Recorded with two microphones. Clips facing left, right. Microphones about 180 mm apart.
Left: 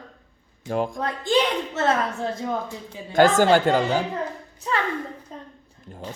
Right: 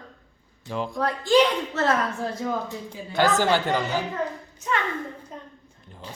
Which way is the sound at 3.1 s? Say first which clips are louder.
Left 5 dB; 50° left (ahead or behind).